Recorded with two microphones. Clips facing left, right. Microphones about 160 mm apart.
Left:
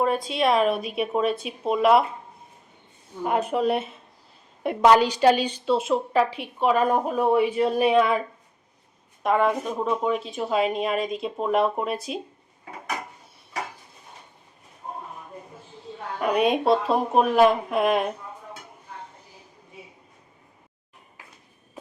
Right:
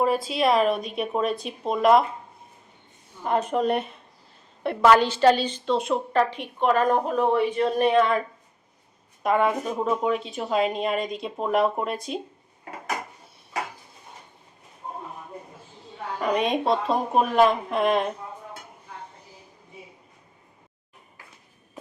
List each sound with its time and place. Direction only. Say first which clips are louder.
0.0 s a woman's voice: even; 5° right (ahead or behind)
3.2 s a woman's voice: even; 5° left (ahead or behind)
4.6 s a woman's voice: left 1 dB; 15° left (ahead or behind)
9.2 s a woman's voice: even; centre (ahead or behind)
16.2 s a woman's voice: left 2 dB; 5° left (ahead or behind)